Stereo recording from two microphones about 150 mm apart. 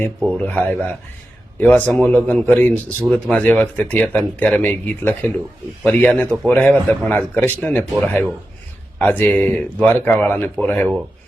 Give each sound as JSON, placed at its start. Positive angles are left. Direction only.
{"t": 0.2, "sound": "speech", "side_deg": 5}